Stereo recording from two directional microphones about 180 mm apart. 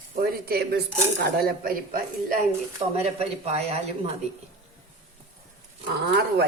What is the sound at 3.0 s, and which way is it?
Speech, 35° right (ahead or behind).